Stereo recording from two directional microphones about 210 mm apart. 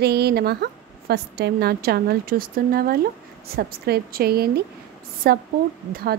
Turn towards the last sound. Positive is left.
turn(degrees=-45)  # may be behind; listen again after turning